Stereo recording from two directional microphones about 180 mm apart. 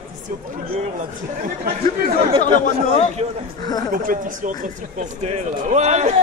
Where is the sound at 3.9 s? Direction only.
50° right (ahead or behind).